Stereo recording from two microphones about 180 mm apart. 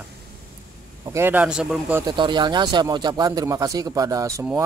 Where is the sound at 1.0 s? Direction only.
15° right (ahead or behind).